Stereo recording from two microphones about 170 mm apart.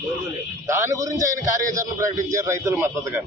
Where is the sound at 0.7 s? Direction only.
15° right (ahead or behind).